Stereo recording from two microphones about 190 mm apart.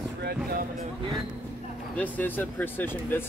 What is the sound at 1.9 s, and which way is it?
Speech, 10° left (ahead or behind).